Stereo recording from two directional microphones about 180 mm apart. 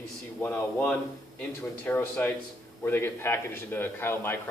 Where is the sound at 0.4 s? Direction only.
10° left (ahead or behind).